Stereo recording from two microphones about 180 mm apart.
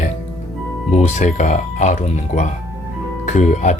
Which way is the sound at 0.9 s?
40° left (ahead or behind).